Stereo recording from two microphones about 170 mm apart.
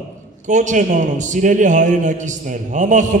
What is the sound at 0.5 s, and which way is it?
A man's voice, 45° right (ahead or behind).